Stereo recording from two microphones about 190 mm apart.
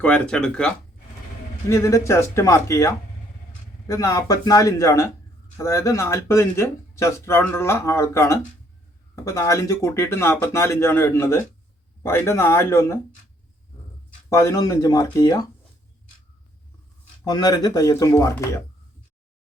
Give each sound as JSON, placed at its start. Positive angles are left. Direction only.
{"t": 0.0, "sound": "speech", "side_deg": 5}
{"t": 1.7, "sound": "speech", "side_deg": 15}
{"t": 14.3, "sound": "speech", "side_deg": 15}
{"t": 17.2, "sound": "speech", "side_deg": 20}